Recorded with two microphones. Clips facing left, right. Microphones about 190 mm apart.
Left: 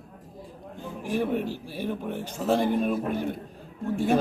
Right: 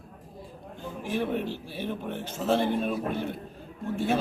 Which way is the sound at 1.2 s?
10° left (ahead or behind).